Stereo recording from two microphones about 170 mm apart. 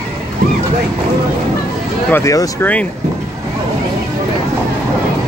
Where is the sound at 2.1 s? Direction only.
20° left (ahead or behind).